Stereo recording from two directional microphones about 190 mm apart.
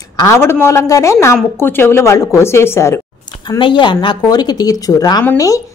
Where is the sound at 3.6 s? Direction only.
25° left (ahead or behind).